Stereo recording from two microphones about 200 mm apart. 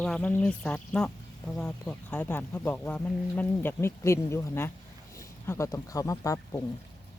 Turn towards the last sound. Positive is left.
turn(degrees=15)  # may be behind; listen again after turning